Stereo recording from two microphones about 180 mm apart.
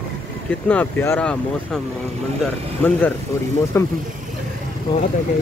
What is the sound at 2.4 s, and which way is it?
Speech, 10° left (ahead or behind).